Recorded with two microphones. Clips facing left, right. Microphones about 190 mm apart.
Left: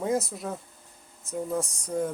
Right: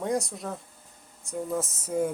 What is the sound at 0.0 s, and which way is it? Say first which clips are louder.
Speech: left 1 dB; centre (ahead or behind).